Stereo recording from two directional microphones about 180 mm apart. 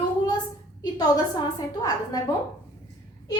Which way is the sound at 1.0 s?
20° left (ahead or behind).